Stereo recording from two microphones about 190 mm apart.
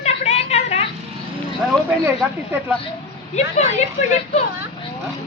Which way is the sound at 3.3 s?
35° left (ahead or behind).